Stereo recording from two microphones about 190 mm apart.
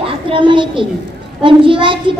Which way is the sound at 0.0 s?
25° right (ahead or behind).